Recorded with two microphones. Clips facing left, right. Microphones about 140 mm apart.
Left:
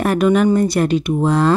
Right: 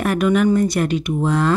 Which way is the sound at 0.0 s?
30° left (ahead or behind).